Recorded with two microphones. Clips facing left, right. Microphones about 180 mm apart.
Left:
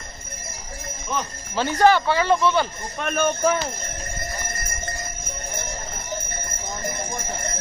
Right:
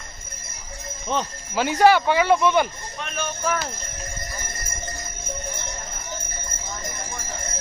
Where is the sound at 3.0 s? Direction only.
50° left (ahead or behind).